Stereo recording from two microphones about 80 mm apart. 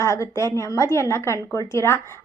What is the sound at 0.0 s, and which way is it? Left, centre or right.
A woman's voice, left.